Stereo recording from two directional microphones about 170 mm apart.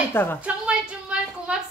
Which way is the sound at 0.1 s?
15° left (ahead or behind).